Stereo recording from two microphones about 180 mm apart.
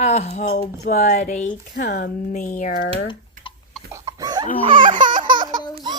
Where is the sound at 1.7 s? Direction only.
50° left (ahead or behind).